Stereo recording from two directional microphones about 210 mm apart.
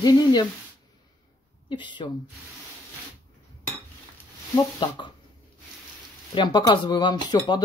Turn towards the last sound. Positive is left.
turn(degrees=20)  # may be behind; listen again after turning